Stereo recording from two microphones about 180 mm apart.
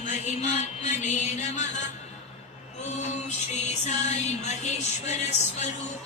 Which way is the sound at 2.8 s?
40° left (ahead or behind).